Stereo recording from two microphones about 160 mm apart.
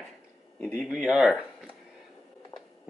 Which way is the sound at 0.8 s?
Centre (ahead or behind).